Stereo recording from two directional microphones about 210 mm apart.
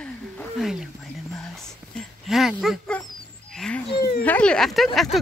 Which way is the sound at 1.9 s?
Centre (ahead or behind).